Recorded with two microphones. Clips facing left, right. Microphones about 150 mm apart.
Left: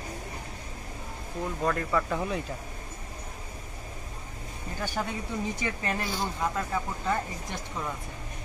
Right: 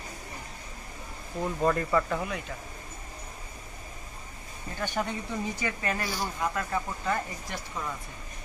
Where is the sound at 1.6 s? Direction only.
Centre (ahead or behind).